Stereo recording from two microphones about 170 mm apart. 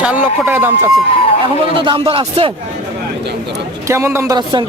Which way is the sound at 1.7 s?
30° right (ahead or behind).